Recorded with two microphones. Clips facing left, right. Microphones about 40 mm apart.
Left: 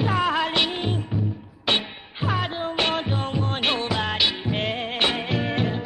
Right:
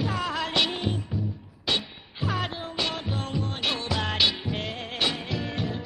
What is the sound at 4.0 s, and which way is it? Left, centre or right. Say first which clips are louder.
Music: left 2 dB; centre.